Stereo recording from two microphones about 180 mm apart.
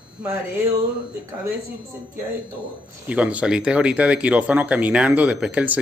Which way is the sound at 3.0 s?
5° right (ahead or behind).